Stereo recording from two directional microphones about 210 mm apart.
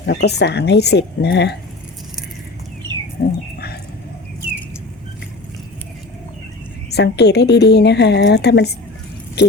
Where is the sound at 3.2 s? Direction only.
45° left (ahead or behind).